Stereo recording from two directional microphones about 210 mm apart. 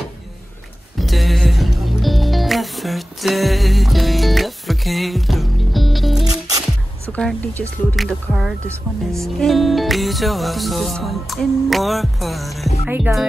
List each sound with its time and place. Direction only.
0.9 s music: centre (ahead or behind)
6.2 s music: 15° right (ahead or behind)
7.1 s music: 5° left (ahead or behind)
12.8 s speech: 5° right (ahead or behind)